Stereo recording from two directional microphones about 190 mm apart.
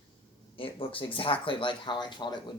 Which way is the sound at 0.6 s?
30° left (ahead or behind).